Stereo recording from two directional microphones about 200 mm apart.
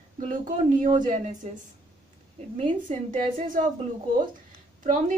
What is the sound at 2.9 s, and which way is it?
Speech, 35° right (ahead or behind).